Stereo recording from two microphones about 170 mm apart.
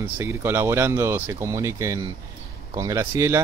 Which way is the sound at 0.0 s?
15° right (ahead or behind).